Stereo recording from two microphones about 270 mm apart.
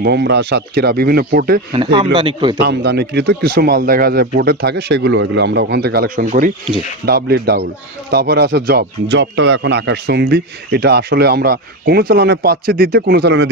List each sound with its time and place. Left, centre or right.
0.0 s speech: right
1.7 s speech: centre
2.6 s speech: right